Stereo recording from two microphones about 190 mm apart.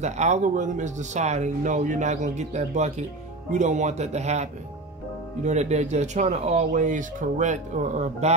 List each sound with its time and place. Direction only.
0.0 s speech: 35° right (ahead or behind)